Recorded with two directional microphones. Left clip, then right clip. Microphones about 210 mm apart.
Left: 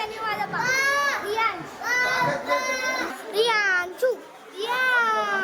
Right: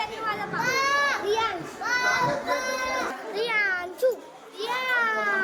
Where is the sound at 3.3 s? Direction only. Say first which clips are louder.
Left 5 dB; 40° left (ahead or behind).